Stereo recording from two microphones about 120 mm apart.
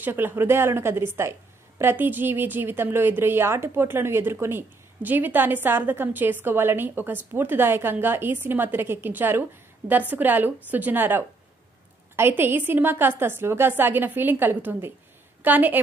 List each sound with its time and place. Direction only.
0.0 s a woman's voice: 15° right (ahead or behind)